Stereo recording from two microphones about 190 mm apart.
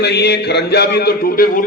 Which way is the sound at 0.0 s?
60° left (ahead or behind).